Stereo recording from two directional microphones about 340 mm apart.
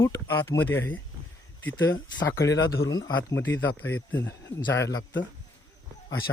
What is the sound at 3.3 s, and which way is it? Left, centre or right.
Speech, left.